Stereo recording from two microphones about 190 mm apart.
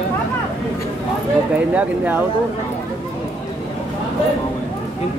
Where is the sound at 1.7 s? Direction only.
10° right (ahead or behind).